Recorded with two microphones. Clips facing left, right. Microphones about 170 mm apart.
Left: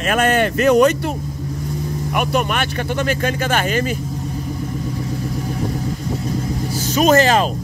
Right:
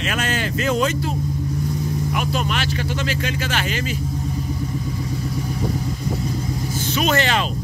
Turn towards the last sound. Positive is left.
turn(degrees=40)  # may be behind; listen again after turning